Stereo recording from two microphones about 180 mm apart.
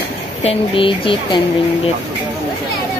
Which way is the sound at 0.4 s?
30° left (ahead or behind).